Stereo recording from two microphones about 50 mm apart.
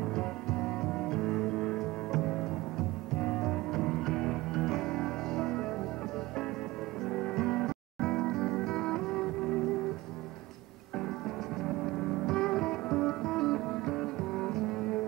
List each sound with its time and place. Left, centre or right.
0.0 s music: centre
7.0 s music: centre
11.0 s music: centre